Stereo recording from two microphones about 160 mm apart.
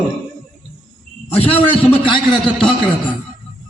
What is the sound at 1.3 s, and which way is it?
Speech, 35° left (ahead or behind).